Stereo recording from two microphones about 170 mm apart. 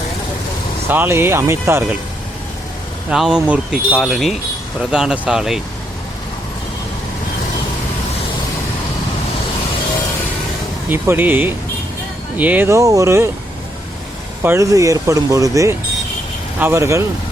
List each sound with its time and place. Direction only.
0.9 s speech: 10° right (ahead or behind)
3.1 s speech: 5° right (ahead or behind)
10.8 s speech: 15° right (ahead or behind)
14.4 s speech: 15° right (ahead or behind)